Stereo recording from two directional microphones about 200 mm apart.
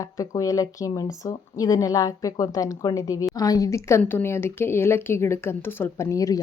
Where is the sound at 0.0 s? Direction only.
15° left (ahead or behind).